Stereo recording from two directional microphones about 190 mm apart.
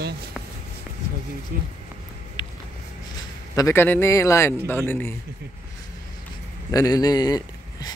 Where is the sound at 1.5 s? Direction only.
50° right (ahead or behind).